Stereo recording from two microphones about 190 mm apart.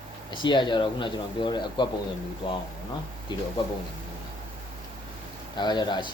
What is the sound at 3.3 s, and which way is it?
Speech, 25° left (ahead or behind).